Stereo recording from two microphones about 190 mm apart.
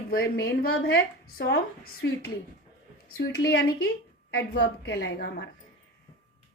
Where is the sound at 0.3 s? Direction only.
55° left (ahead or behind).